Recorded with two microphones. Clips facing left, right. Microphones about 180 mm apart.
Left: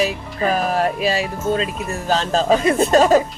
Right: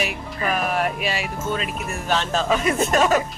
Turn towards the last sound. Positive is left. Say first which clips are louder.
# left 5 dB
turn(degrees=30)  # may be behind; listen again after turning